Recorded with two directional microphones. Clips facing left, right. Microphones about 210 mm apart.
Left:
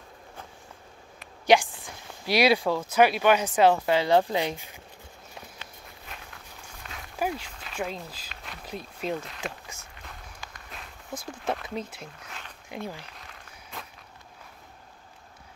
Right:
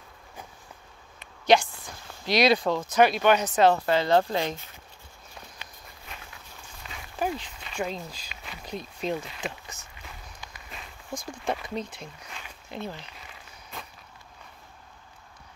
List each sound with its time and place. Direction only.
1.4 s speech: 15° left (ahead or behind)
6.9 s a sound: 5° left (ahead or behind)
9.1 s speech: 5° right (ahead or behind)
10.0 s a sound: centre (ahead or behind)
12.7 s speech: 10° left (ahead or behind)
13.7 s walk: centre (ahead or behind)